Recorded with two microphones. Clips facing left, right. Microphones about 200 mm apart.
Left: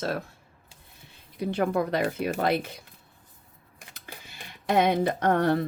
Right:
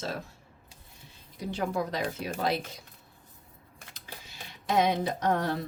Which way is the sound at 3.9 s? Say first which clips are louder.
Left 1 dB; 60° left (ahead or behind).